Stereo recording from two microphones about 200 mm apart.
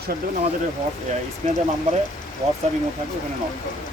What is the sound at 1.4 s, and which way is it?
Speech, 35° right (ahead or behind).